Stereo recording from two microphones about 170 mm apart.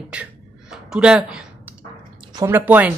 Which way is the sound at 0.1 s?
5° right (ahead or behind).